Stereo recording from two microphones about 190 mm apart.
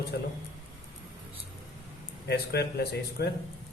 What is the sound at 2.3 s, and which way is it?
A man's voice, 60° left (ahead or behind).